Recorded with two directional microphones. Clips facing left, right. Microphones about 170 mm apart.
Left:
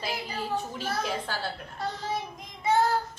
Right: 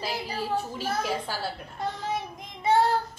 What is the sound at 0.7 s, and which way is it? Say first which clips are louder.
A child's voice: right 2 dB; 10° right (ahead or behind).